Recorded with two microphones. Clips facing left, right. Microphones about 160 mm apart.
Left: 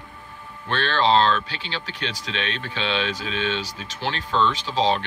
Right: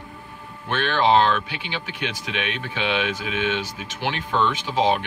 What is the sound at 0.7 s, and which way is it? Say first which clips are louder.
Speech: right 1 dB; 15° right (ahead or behind).